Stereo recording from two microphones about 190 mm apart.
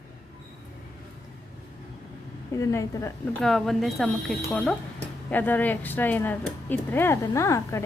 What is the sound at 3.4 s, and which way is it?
Speech, centre (ahead or behind).